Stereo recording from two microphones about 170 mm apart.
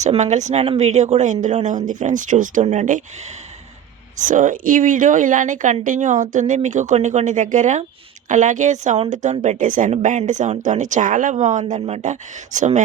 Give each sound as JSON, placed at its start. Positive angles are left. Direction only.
{"t": 0.0, "sound": "a woman's voice", "side_deg": -45}
{"t": 4.2, "sound": "a woman's voice", "side_deg": -50}